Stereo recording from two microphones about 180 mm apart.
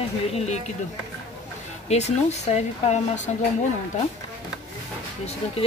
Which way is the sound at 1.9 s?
40° left (ahead or behind).